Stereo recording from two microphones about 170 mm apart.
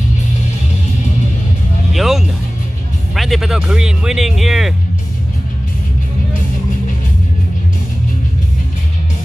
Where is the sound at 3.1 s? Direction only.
Centre (ahead or behind).